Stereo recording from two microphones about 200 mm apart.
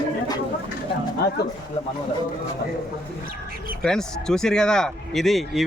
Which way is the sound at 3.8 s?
5° left (ahead or behind).